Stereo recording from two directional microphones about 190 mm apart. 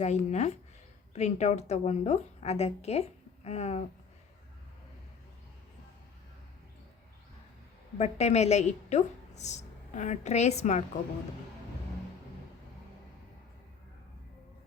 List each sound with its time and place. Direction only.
0.0 s a woman's voice: 35° left (ahead or behind)
7.9 s a woman's voice: 35° left (ahead or behind)